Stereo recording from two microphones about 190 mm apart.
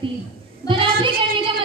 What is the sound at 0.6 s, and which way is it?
Child singing, 25° right (ahead or behind).